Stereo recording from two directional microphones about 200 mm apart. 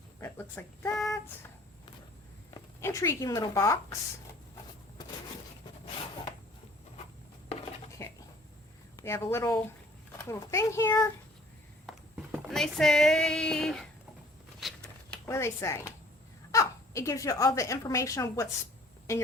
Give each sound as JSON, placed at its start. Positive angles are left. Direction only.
{"t": 0.2, "sound": "speech", "side_deg": 10}
{"t": 2.8, "sound": "a child's voice", "side_deg": 15}
{"t": 7.9, "sound": "a sound", "side_deg": 15}
{"t": 9.0, "sound": "a child's voice", "side_deg": 15}
{"t": 11.9, "sound": "speech", "side_deg": 0}
{"t": 14.6, "sound": "a sound", "side_deg": 5}
{"t": 16.5, "sound": "a child's voice", "side_deg": 15}